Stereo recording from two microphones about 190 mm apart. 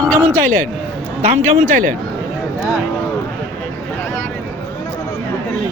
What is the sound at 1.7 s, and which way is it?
Speech, 45° right (ahead or behind).